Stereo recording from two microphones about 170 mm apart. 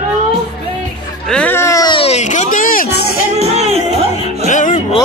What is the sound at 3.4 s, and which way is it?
Music, 40° right (ahead or behind).